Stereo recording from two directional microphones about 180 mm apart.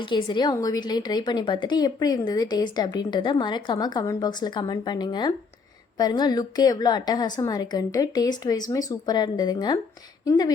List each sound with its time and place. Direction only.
0.0 s a woman's voice: 25° left (ahead or behind)